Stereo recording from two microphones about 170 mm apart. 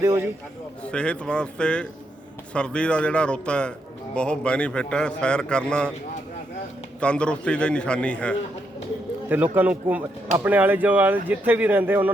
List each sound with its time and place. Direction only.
0.0 s speech: 15° right (ahead or behind)
0.9 s a man's voice: 5° left (ahead or behind)
7.0 s a man's voice: 5° left (ahead or behind)
9.3 s speech: 10° right (ahead or behind)